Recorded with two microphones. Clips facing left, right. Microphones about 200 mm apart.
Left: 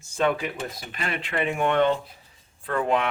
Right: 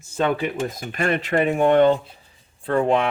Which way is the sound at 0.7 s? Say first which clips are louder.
Right 9 dB; 50° right (ahead or behind).